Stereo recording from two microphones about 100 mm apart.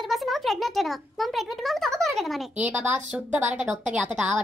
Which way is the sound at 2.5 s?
15° right (ahead or behind).